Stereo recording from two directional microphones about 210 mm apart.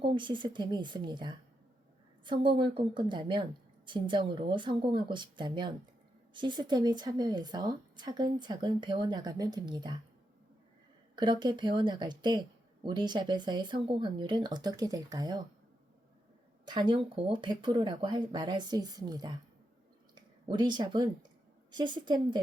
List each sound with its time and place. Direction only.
0.0 s speech: 20° right (ahead or behind)
11.1 s speech: 20° right (ahead or behind)
16.6 s speech: 20° right (ahead or behind)
20.5 s speech: 20° right (ahead or behind)